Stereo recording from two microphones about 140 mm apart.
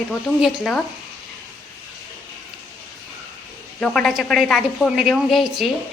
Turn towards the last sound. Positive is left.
turn(degrees=0)  # may be behind; listen again after turning